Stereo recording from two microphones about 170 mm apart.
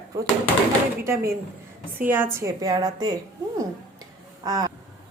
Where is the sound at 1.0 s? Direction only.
15° right (ahead or behind).